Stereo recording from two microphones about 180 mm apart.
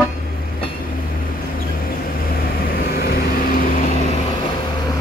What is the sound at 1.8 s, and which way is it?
Vehicle, 55° left (ahead or behind).